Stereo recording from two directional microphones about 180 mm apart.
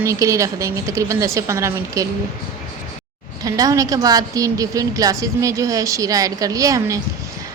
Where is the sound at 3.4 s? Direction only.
20° right (ahead or behind).